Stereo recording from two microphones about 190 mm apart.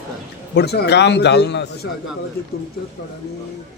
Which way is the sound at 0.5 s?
60° left (ahead or behind).